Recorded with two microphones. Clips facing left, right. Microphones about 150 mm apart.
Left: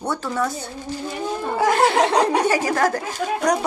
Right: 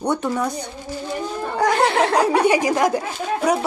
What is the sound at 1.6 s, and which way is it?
Speech, centre (ahead or behind).